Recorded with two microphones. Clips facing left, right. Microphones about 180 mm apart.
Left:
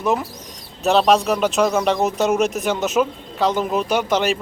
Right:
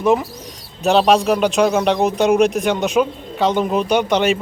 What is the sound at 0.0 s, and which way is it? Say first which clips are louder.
Speech: right 5 dB; centre (ahead or behind).